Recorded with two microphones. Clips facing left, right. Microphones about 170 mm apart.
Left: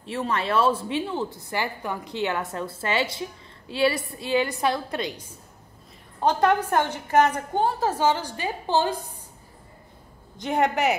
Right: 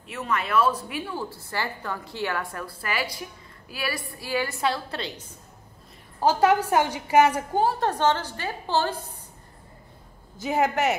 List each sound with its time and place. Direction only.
0.0 s a woman's voice: 30° left (ahead or behind); by 5.4 s 10° left (ahead or behind)
6.2 s a woman's voice: 5° right (ahead or behind); by 8.9 s 15° left (ahead or behind)
10.3 s a woman's voice: 5° right (ahead or behind)